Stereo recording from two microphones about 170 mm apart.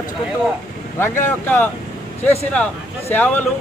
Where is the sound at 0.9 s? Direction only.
15° left (ahead or behind).